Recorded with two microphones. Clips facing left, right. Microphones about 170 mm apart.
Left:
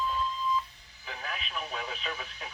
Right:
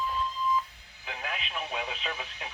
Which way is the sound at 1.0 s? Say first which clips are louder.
Right 2 dB; 15° right (ahead or behind).